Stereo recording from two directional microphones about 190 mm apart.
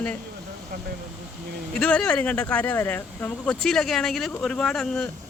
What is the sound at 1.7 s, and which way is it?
Speech, 5° left (ahead or behind).